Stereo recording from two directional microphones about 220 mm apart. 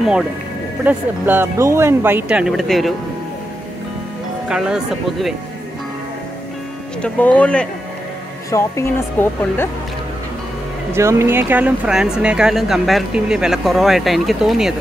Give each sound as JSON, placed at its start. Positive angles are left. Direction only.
{"t": 0.8, "sound": "speech", "side_deg": -10}
{"t": 4.5, "sound": "speech", "side_deg": -5}
{"t": 7.0, "sound": "speech", "side_deg": 5}
{"t": 10.9, "sound": "speech", "side_deg": -10}